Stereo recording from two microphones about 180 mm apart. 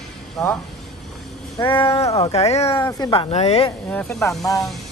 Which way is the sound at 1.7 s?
30° left (ahead or behind).